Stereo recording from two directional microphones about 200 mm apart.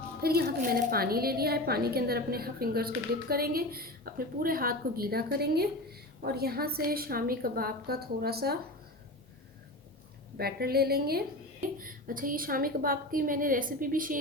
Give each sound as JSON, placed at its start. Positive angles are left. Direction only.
{"t": 0.2, "sound": "a woman's voice", "side_deg": -50}
{"t": 10.3, "sound": "a woman's voice", "side_deg": -50}